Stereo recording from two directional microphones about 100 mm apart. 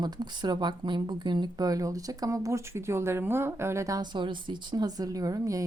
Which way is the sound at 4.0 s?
50° right (ahead or behind).